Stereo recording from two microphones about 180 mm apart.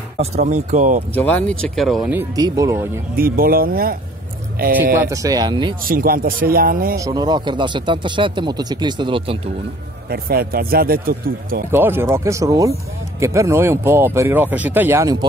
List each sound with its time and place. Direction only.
0.2 s speech: 40° right (ahead or behind)
1.1 s speech: 10° left (ahead or behind)
2.1 s speech: 20° right (ahead or behind)
3.2 s a man's voice: 55° right (ahead or behind)
5.1 s speech: 20° right (ahead or behind)
5.9 s a man's voice: 55° right (ahead or behind)
7.0 s speech: 20° right (ahead or behind)
10.0 s a man's voice: 60° right (ahead or behind)
11.7 s speech: 10° right (ahead or behind)